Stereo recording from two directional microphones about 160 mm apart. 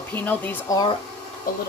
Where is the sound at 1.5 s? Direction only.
65° left (ahead or behind).